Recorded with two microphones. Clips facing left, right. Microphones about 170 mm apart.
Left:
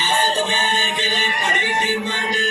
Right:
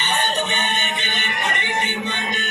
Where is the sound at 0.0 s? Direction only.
70° left (ahead or behind).